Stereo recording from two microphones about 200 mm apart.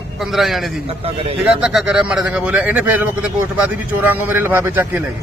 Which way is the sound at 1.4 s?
5° right (ahead or behind).